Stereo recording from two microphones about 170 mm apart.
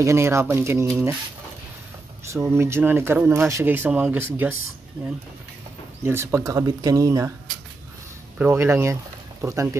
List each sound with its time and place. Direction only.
0.0 s speech: 15° right (ahead or behind)
2.3 s speech: 15° right (ahead or behind)
6.0 s speech: 15° right (ahead or behind)
8.4 s speech: 15° right (ahead or behind)